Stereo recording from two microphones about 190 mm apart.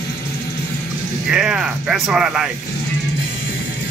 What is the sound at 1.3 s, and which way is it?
Speech, 5° right (ahead or behind).